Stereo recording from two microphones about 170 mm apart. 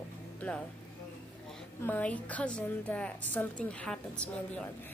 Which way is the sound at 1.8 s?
10° left (ahead or behind).